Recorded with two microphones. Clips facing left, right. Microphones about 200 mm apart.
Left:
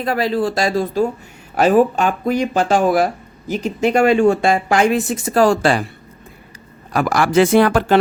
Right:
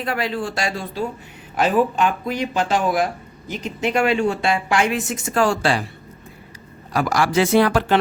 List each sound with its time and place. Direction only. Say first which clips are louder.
0.0 s speech: left 6 dB; 35° left (ahead or behind)
6.9 s speech: left 4 dB; 55° left (ahead or behind)